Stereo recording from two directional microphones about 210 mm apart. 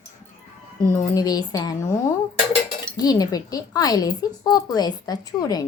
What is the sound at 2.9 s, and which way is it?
Speech, 20° left (ahead or behind).